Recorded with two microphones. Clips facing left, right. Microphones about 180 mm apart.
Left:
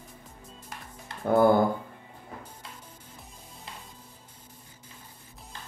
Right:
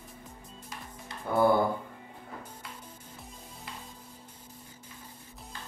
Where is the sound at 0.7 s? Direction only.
55° left (ahead or behind).